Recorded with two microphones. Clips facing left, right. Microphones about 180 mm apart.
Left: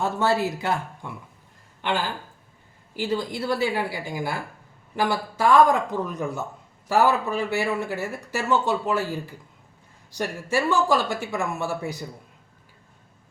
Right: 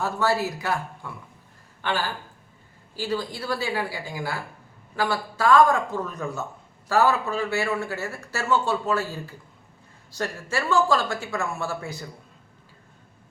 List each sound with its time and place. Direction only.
0.0 s a woman's voice: 25° left (ahead or behind)
2.9 s a woman's voice: 20° left (ahead or behind)